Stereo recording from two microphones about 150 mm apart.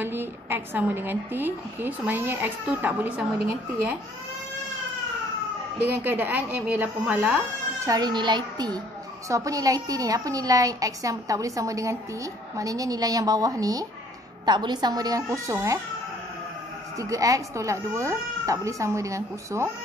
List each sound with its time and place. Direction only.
0.0 s a woman's voice: 15° right (ahead or behind)
5.8 s a woman's voice: 10° right (ahead or behind)
16.9 s a woman's voice: 20° right (ahead or behind)